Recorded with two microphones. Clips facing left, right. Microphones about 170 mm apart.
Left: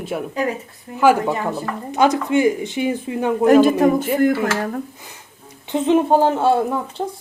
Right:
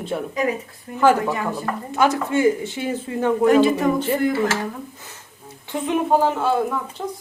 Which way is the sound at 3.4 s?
45° left (ahead or behind).